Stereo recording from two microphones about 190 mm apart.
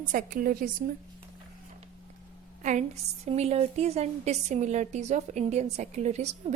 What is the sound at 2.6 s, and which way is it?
A woman's voice, 40° right (ahead or behind).